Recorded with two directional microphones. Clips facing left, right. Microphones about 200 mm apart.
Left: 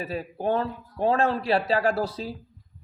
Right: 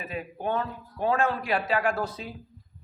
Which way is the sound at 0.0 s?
35° left (ahead or behind).